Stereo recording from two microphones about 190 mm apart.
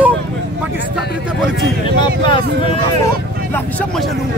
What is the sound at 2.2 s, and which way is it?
Speech, 25° left (ahead or behind).